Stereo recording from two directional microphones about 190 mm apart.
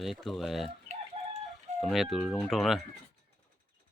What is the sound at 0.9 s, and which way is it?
Chicken, 35° right (ahead or behind).